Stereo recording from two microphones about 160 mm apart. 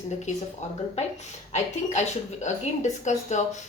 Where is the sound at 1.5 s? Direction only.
45° left (ahead or behind).